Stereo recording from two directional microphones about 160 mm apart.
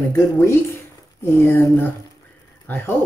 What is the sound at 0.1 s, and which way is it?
Speech, 20° left (ahead or behind).